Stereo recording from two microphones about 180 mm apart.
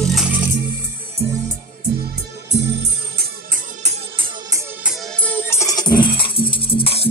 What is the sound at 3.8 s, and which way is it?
Music, 30° right (ahead or behind).